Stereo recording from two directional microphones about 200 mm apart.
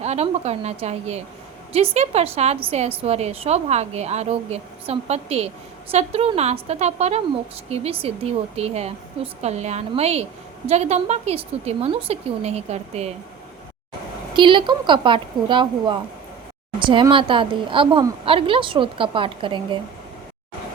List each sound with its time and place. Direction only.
0.0 s a woman's voice: 30° right (ahead or behind)
14.3 s a woman's voice: 25° right (ahead or behind)